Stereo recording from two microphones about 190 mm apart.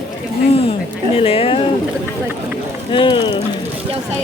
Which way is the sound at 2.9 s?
25° left (ahead or behind).